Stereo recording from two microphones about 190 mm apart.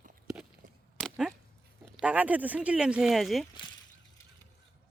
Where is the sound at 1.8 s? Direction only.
5° right (ahead or behind).